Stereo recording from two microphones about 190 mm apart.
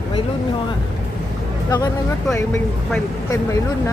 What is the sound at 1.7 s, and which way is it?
Speech, 20° left (ahead or behind).